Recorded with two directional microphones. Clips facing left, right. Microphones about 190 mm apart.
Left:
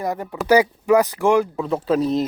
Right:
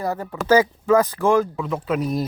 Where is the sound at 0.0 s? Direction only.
15° left (ahead or behind).